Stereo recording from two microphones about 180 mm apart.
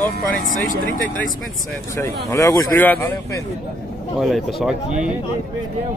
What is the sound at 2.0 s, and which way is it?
Speech, 15° left (ahead or behind).